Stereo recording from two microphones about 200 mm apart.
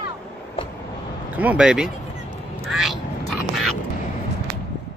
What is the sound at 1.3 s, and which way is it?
Speech, 5° right (ahead or behind).